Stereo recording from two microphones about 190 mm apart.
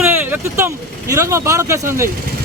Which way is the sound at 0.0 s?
10° right (ahead or behind).